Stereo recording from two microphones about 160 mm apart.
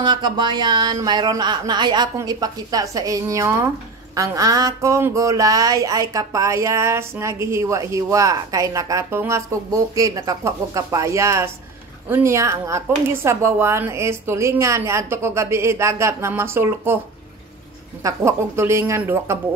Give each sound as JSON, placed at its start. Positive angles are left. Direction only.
{"t": 0.0, "sound": "speech", "side_deg": -30}
{"t": 18.0, "sound": "speech", "side_deg": -15}